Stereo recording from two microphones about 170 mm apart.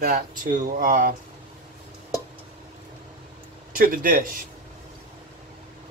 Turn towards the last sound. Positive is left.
turn(degrees=-55)  # may be behind; listen again after turning